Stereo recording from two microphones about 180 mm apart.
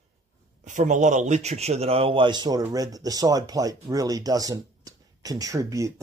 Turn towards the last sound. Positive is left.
turn(degrees=-20)  # may be behind; listen again after turning